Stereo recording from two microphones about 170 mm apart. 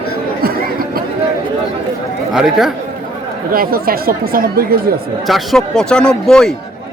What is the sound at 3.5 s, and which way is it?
Speech, 60° right (ahead or behind).